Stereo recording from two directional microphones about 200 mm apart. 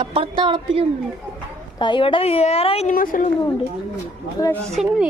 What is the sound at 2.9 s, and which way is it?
Speech, 45° left (ahead or behind).